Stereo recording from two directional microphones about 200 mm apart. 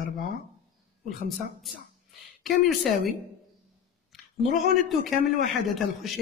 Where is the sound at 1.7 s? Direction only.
Centre (ahead or behind).